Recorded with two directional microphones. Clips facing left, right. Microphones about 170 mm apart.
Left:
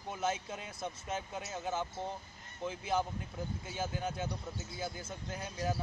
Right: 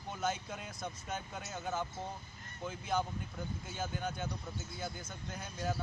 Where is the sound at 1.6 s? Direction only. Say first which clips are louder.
Left 1 dB; 30° left (ahead or behind).